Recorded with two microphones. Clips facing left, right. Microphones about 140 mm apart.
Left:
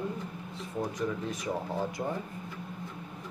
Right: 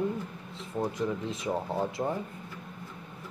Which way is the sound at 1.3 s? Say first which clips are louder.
Right 2 dB; 25° right (ahead or behind).